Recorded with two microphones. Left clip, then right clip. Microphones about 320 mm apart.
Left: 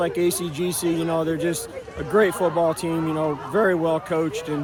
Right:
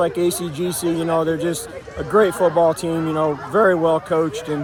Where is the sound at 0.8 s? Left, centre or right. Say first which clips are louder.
Right 4 dB; centre.